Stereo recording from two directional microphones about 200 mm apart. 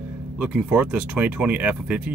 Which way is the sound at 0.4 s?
5° right (ahead or behind).